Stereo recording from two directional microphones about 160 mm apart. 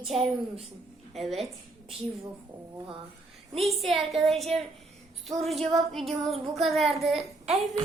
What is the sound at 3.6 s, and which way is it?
Child singing, centre (ahead or behind).